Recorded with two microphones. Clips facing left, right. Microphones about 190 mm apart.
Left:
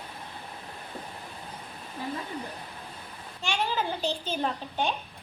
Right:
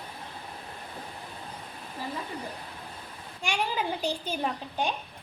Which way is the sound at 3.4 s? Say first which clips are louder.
Left 1 dB; 15° right (ahead or behind).